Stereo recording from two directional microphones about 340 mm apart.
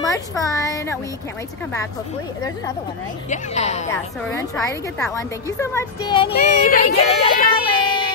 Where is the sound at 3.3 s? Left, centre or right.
Centre.